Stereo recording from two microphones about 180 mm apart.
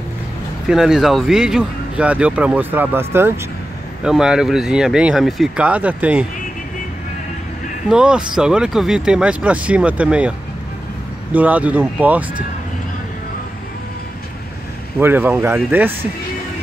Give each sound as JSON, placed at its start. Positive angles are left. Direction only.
{"t": 0.7, "sound": "speech", "side_deg": -5}
{"t": 7.9, "sound": "speech", "side_deg": -5}
{"t": 11.3, "sound": "speech", "side_deg": -10}
{"t": 15.0, "sound": "speech", "side_deg": -10}